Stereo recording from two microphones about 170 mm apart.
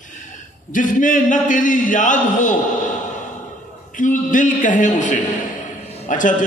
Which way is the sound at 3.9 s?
50° left (ahead or behind).